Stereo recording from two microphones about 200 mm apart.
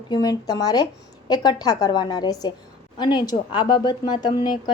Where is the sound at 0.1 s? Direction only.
20° left (ahead or behind).